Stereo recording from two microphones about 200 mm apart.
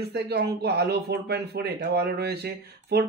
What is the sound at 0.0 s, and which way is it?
Speech, 55° right (ahead or behind).